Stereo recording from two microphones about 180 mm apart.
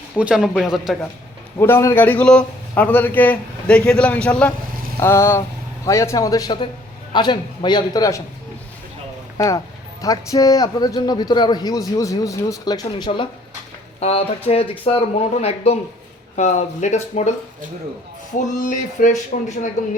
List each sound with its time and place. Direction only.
0.2 s speech: 5° right (ahead or behind)
1.5 s a man's voice: 15° left (ahead or behind)
9.4 s a man's voice: 15° left (ahead or behind); by 17.3 s 40° left (ahead or behind)
18.4 s a sound: 45° left (ahead or behind)